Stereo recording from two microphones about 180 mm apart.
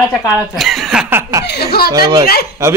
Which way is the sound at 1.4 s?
65° left (ahead or behind).